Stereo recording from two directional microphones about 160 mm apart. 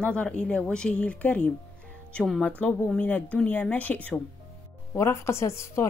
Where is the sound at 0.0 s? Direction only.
5° left (ahead or behind).